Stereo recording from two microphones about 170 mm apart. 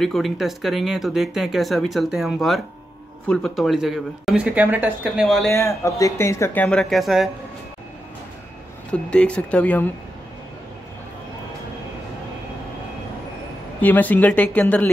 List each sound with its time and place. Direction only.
0.0 s speech: centre (ahead or behind)
5.5 s speech: 15° left (ahead or behind); by 7.2 s centre (ahead or behind)
8.9 s speech: 5° left (ahead or behind)
13.7 s speech: 10° left (ahead or behind)